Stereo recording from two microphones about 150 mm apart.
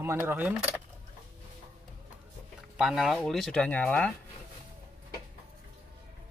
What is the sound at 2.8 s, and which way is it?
Speech, centre (ahead or behind).